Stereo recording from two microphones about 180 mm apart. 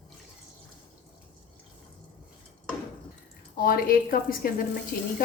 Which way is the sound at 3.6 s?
55° left (ahead or behind).